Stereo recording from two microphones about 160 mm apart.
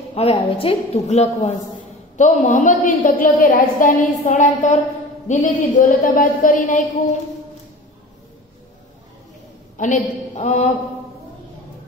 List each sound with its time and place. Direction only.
0.1 s a woman's voice: 35° left (ahead or behind); by 6.8 s 55° left (ahead or behind)
9.8 s a woman's voice: 50° left (ahead or behind)